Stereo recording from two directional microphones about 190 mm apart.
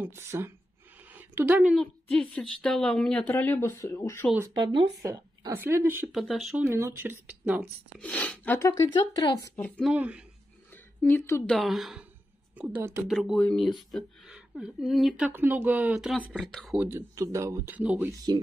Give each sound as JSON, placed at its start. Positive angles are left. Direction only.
{"t": 0.0, "sound": "a woman's voice", "side_deg": -10}
{"t": 5.0, "sound": "speech", "side_deg": -15}
{"t": 6.1, "sound": "speech", "side_deg": 0}
{"t": 8.0, "sound": "speech", "side_deg": 10}
{"t": 9.6, "sound": "speech", "side_deg": 5}
{"t": 9.9, "sound": "speech", "side_deg": -5}
{"t": 10.7, "sound": "a woman's voice", "side_deg": 10}
{"t": 18.1, "sound": "speech", "side_deg": -20}